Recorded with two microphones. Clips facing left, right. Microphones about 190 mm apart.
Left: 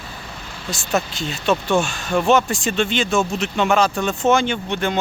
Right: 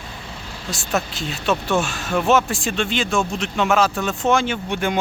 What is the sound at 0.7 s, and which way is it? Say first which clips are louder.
Speech: left 2 dB; centre (ahead or behind).